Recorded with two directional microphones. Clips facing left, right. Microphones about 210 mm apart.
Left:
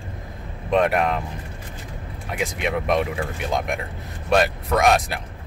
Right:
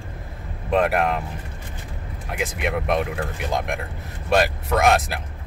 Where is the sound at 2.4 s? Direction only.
Centre (ahead or behind).